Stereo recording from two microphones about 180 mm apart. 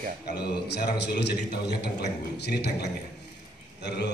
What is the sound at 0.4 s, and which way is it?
Speech, 65° left (ahead or behind).